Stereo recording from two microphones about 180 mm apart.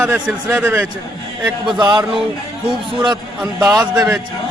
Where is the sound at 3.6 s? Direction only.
20° right (ahead or behind).